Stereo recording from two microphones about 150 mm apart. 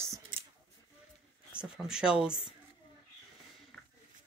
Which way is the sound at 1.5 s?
5° right (ahead or behind).